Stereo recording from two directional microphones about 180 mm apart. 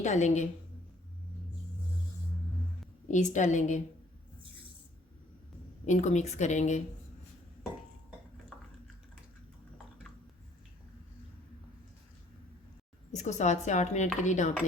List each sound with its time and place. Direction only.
0.0 s speech: 40° left (ahead or behind)
3.1 s a woman's voice: 40° left (ahead or behind)
5.8 s speech: 40° left (ahead or behind)
8.5 s a sound: 5° left (ahead or behind)
13.1 s speech: 40° left (ahead or behind)